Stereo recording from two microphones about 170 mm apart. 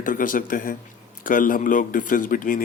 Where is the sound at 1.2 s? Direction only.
55° left (ahead or behind).